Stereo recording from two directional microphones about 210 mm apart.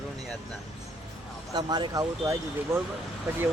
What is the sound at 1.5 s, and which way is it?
Speech, 20° right (ahead or behind).